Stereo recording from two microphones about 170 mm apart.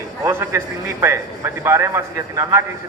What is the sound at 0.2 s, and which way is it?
A man's voice, 15° right (ahead or behind).